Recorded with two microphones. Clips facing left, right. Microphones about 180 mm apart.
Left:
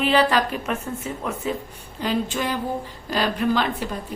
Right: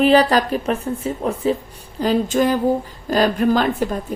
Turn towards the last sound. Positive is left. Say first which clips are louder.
# right 5 dB
turn(degrees=-45)  # may be behind; listen again after turning